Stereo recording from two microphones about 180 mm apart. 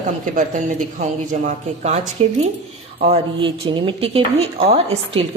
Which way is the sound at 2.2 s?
35° right (ahead or behind).